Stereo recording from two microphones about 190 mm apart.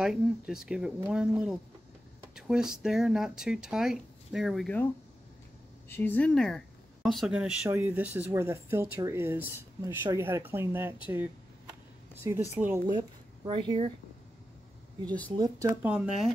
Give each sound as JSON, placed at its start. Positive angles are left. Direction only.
{"t": 0.0, "sound": "speech", "side_deg": -5}
{"t": 5.9, "sound": "speech", "side_deg": 10}
{"t": 13.5, "sound": "speech", "side_deg": -25}
{"t": 15.0, "sound": "speech", "side_deg": 10}
{"t": 15.3, "sound": "speech", "side_deg": -20}